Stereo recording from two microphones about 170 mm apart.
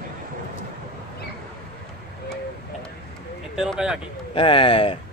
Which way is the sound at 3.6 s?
5° right (ahead or behind).